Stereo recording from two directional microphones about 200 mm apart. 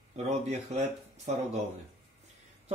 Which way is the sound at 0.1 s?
35° right (ahead or behind).